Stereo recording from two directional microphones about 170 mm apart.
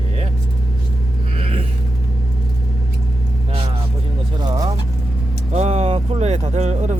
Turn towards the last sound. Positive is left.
turn(degrees=-40)  # may be behind; listen again after turning